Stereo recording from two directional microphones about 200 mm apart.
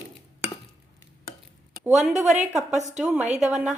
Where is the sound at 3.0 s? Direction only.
5° right (ahead or behind).